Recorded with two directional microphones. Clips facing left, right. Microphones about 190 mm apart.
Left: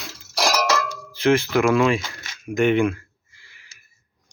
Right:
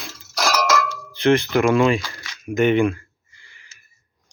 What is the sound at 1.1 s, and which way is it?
Speech, centre (ahead or behind).